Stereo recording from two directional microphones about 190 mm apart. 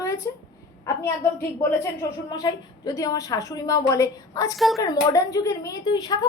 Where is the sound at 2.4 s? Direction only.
20° left (ahead or behind).